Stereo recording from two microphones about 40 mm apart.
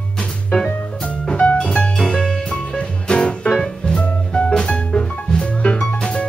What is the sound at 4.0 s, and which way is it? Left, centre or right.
Music, left.